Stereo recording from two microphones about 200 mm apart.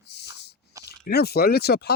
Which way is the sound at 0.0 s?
55° left (ahead or behind).